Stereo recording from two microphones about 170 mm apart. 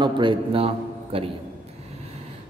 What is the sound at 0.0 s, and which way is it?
A man's voice, 30° right (ahead or behind).